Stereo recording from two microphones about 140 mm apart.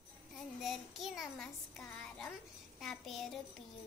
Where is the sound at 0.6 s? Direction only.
Centre (ahead or behind).